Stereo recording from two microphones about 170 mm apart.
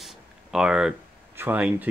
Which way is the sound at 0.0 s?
5° right (ahead or behind).